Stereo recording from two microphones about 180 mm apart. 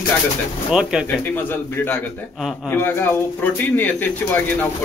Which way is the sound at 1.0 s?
10° left (ahead or behind).